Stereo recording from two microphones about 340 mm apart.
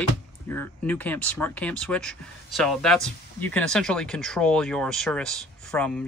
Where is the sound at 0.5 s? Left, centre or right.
Centre.